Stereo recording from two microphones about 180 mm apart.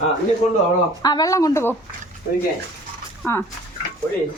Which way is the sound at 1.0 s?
20° left (ahead or behind).